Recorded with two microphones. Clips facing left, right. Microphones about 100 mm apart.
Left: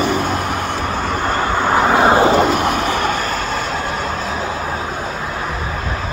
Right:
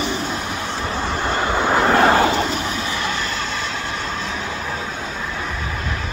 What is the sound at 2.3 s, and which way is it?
Vehicle, 55° left (ahead or behind).